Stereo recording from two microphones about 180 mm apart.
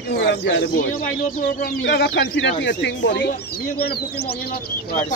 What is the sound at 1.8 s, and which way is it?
Speech, 80° left.